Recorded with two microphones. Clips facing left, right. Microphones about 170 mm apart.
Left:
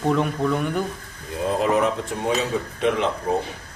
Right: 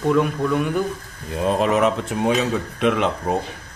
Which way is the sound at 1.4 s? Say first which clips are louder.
Right 2 dB; 80° right.